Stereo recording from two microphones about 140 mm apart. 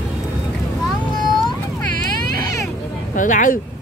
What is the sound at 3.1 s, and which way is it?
Speech, 70° left (ahead or behind).